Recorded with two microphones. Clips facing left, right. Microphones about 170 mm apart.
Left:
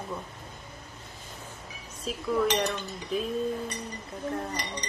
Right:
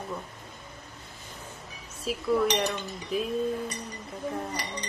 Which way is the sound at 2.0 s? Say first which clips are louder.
Right 2 dB; 5° right (ahead or behind).